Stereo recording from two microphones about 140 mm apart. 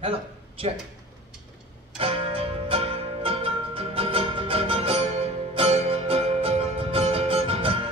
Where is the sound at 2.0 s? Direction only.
40° right (ahead or behind).